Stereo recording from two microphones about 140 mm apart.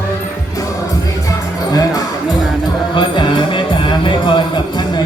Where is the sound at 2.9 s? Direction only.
35° left (ahead or behind).